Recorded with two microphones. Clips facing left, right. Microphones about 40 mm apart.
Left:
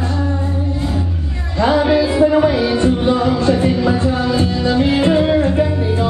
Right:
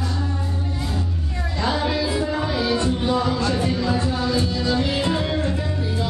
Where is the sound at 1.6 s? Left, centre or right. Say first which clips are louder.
Left 9 dB; left.